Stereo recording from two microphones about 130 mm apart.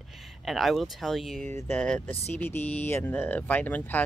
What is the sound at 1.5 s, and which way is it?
Speech, 15° left (ahead or behind).